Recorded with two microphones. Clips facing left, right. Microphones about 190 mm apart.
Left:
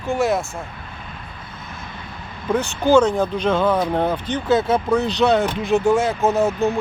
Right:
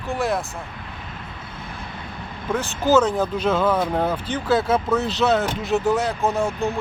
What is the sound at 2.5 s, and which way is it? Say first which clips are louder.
Speech: left 3 dB; centre (ahead or behind).